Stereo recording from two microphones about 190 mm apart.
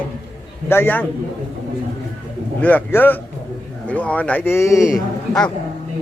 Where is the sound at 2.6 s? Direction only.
10° left (ahead or behind).